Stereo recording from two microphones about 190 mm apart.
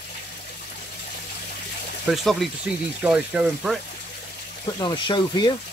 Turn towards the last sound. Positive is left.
turn(degrees=25)  # may be behind; listen again after turning